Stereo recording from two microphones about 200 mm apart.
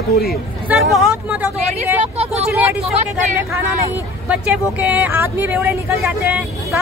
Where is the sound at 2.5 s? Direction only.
5° right (ahead or behind).